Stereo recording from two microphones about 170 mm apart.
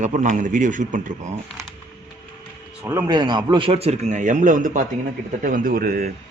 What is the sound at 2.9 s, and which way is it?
A man's voice, 20° right (ahead or behind).